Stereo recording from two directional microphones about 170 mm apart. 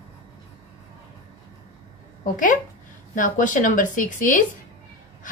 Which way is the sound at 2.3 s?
50° left (ahead or behind).